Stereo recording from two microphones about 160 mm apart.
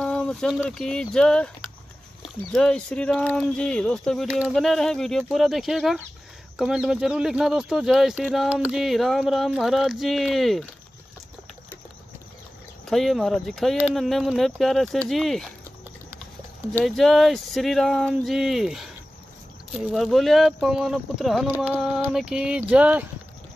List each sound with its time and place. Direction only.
0.0 s a sound: 5° left (ahead or behind)
0.7 s speech: 5° left (ahead or behind)
12.8 s speech: centre (ahead or behind)
16.8 s speech: centre (ahead or behind)